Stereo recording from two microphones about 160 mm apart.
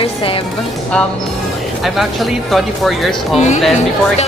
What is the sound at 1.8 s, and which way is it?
Speech, centre (ahead or behind).